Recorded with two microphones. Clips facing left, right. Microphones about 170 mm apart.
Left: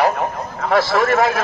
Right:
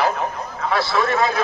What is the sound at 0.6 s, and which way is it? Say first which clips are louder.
Speech: left 4 dB; 75° left (ahead or behind).